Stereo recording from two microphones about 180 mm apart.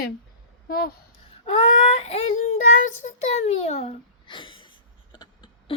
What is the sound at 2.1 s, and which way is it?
A child's voice, 35° left (ahead or behind).